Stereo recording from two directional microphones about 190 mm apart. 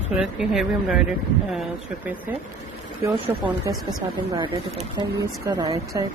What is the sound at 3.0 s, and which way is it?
Speech, 15° right (ahead or behind).